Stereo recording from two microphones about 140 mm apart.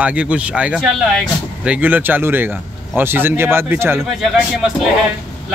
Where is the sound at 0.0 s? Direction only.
10° right (ahead or behind).